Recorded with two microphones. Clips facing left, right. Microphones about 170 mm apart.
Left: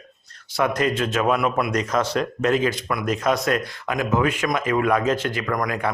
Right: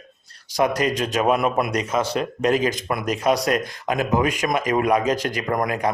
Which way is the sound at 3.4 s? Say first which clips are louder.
Right 1 dB; 15° right (ahead or behind).